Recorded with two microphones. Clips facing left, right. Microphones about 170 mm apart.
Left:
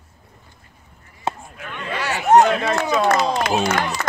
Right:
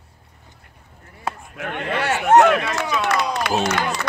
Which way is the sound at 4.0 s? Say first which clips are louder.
Left 1 dB; 50° left (ahead or behind).